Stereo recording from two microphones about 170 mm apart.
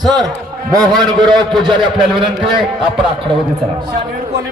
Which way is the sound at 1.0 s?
25° right (ahead or behind).